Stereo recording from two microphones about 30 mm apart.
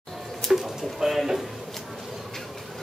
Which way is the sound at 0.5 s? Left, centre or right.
Centre.